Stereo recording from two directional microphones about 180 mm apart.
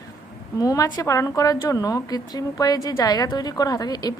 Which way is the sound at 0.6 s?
20° left (ahead or behind).